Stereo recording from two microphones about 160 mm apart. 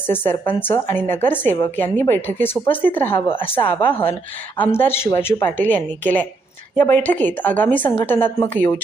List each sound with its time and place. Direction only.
0.1 s a woman's voice: 10° left (ahead or behind)
3.2 s a woman's voice: 35° left (ahead or behind)
4.7 s a woman's voice: 15° left (ahead or behind)